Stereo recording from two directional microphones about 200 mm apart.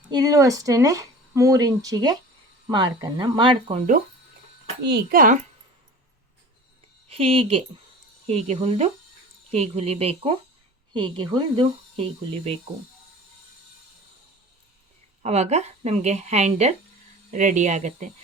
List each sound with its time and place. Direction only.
0.1 s speech: 20° right (ahead or behind)
4.9 s a child's voice: 55° right (ahead or behind)
7.1 s speech: 30° right (ahead or behind)
15.2 s speech: 35° right (ahead or behind)